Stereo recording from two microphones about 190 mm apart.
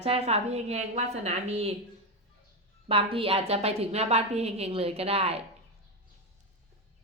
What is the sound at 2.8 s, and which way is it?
A woman's voice, 30° right (ahead or behind).